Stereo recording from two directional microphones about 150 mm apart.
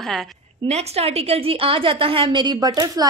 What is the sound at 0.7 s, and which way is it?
A woman's voice, 45° right (ahead or behind).